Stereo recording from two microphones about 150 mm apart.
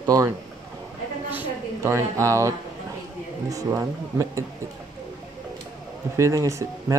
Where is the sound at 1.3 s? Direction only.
20° right (ahead or behind).